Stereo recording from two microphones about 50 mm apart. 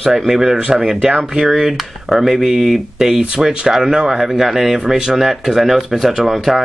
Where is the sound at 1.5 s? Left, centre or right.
Centre.